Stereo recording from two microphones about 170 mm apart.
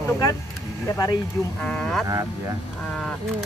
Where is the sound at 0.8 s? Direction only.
20° left (ahead or behind).